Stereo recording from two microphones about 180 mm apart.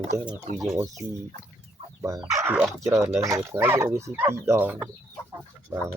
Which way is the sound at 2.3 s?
15° right (ahead or behind).